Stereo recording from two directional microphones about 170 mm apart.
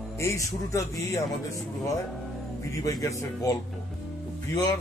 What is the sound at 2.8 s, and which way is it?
Speech, 20° left (ahead or behind).